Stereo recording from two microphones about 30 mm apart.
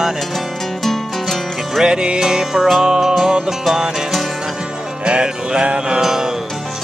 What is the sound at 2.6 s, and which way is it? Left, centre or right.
Music, centre.